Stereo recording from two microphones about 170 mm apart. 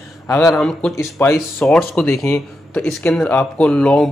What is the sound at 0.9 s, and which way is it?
Speech, 15° left (ahead or behind).